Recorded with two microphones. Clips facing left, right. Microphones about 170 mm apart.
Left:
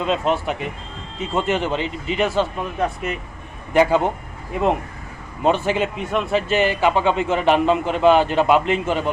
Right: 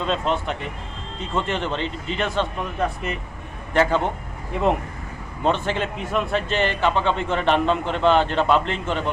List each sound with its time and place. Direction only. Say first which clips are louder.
0.0 s a man's voice: left 3 dB; 5° left (ahead or behind)
5.4 s a man's voice: left 4 dB; 5° left (ahead or behind)